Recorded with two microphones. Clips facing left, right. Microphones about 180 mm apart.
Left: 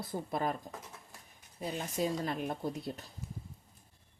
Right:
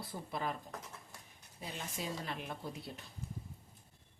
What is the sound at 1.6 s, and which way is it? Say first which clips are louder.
Speech: left 9 dB; 45° left (ahead or behind).